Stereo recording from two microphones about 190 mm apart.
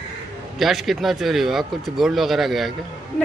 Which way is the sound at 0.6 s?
Centre (ahead or behind).